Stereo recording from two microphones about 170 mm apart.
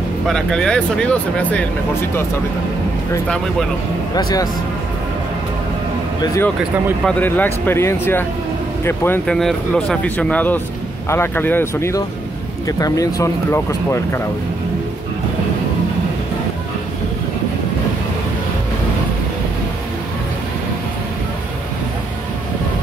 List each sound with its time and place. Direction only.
0.3 s speech: 5° left (ahead or behind)
4.1 s speech: 20° left (ahead or behind)
7.1 s speech: 10° left (ahead or behind)